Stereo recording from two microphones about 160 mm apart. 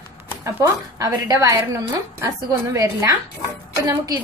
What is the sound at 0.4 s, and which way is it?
A woman's voice, 20° right (ahead or behind).